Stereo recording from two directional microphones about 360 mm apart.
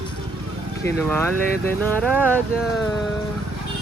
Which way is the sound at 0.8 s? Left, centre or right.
Centre.